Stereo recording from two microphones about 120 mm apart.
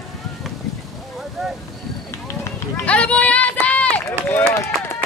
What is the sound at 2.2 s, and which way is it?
Run, 15° left (ahead or behind).